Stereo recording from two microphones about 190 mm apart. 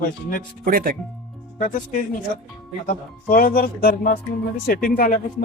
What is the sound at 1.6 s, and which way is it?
Speech, 45° left (ahead or behind).